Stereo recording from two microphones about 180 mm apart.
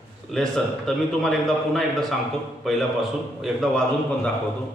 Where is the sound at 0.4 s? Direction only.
5° left (ahead or behind).